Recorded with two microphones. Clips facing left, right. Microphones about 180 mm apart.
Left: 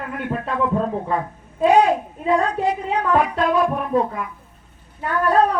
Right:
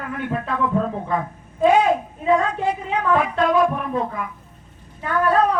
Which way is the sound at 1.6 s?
35° left (ahead or behind).